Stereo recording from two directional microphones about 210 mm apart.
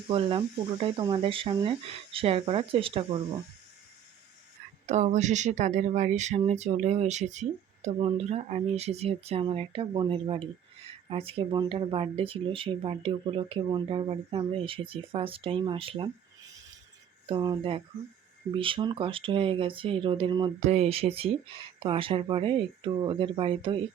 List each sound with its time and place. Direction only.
0.1 s speech: 25° right (ahead or behind)
4.9 s speech: 30° right (ahead or behind)
17.2 s speech: 20° right (ahead or behind)